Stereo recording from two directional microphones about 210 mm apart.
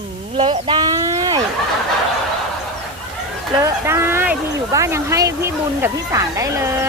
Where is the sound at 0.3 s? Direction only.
25° right (ahead or behind).